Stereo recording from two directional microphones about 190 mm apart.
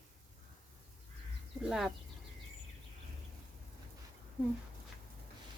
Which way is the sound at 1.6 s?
Centre (ahead or behind).